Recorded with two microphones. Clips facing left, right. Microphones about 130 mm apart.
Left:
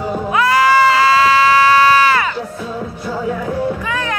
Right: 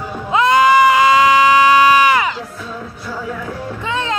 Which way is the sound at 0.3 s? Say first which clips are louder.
Right 2 dB; 20° right (ahead or behind).